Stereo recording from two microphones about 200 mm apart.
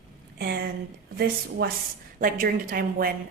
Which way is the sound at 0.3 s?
50° right (ahead or behind).